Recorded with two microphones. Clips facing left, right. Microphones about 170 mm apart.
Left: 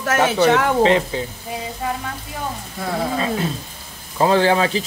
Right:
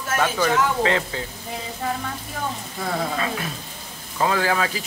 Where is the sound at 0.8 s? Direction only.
20° left (ahead or behind).